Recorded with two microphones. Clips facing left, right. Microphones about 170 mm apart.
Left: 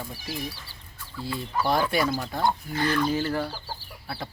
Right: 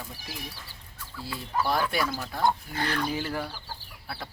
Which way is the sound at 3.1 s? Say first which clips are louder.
Left 5 dB; 10° right (ahead or behind).